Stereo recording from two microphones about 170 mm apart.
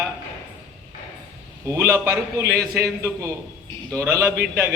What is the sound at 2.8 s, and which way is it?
A man's voice, 15° right (ahead or behind).